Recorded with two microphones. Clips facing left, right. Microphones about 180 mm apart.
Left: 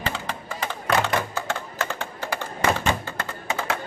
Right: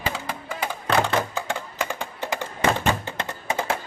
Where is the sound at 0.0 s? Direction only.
10° right (ahead or behind).